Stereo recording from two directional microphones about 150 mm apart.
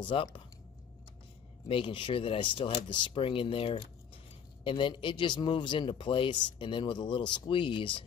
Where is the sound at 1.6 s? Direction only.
35° left (ahead or behind).